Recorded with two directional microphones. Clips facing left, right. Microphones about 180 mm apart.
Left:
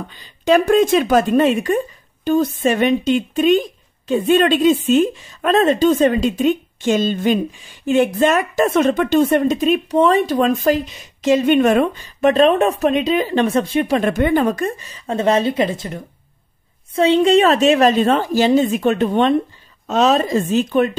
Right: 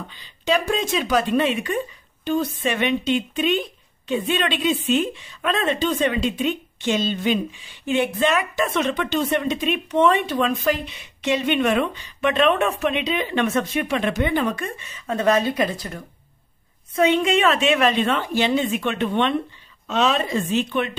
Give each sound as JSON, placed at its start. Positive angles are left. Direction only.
{"t": 0.1, "sound": "a woman's voice", "side_deg": 50}